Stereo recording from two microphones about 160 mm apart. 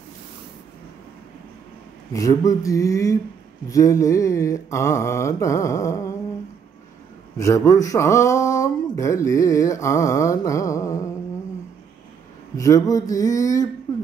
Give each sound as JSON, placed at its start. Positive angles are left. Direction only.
{"t": 2.1, "sound": "speech", "side_deg": 20}
{"t": 7.3, "sound": "speech", "side_deg": 20}
{"t": 12.5, "sound": "speech", "side_deg": 20}
{"t": 13.9, "sound": "a sound", "side_deg": 20}